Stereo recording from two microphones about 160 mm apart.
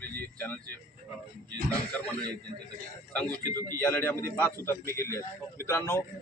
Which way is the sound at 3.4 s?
25° right (ahead or behind).